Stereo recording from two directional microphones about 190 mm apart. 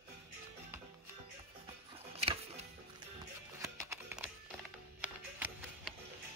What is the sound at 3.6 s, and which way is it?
Music, 15° right (ahead or behind).